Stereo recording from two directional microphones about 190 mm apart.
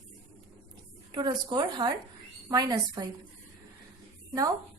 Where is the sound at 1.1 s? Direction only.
25° right (ahead or behind).